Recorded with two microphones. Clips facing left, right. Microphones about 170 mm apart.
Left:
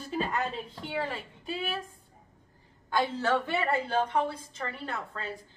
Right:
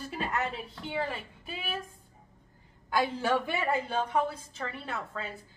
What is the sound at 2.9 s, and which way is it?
A woman's voice, 10° right (ahead or behind).